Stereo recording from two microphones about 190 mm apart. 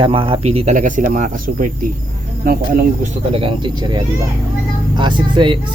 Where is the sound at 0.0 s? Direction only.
25° right (ahead or behind); by 1.9 s 45° right (ahead or behind).